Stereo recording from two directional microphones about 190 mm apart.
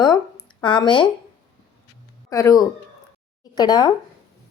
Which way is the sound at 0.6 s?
25° left (ahead or behind).